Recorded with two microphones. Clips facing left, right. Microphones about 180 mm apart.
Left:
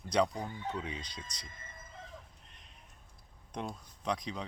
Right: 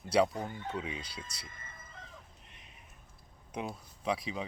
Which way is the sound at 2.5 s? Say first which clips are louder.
Right 2 dB; 5° right (ahead or behind).